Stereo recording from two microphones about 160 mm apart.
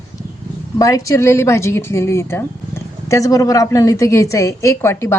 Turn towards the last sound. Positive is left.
turn(degrees=15)  # may be behind; listen again after turning